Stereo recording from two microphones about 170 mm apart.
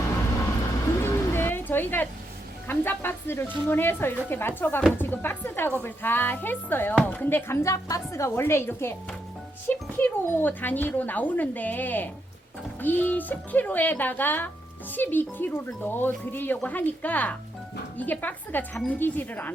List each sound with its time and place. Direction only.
1.0 s music: 15° left (ahead or behind)
2.6 s speech: 10° left (ahead or behind)